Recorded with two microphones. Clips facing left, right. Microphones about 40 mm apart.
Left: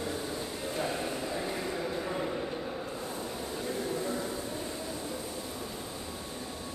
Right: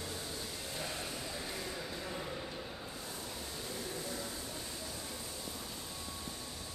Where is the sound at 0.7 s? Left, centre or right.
Left.